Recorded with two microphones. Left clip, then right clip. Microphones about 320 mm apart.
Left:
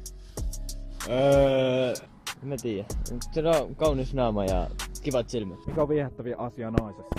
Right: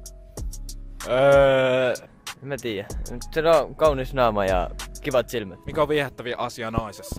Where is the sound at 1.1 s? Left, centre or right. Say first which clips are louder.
Right 5 dB; right.